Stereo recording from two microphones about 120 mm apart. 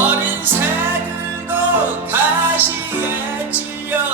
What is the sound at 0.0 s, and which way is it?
Music, 15° right (ahead or behind).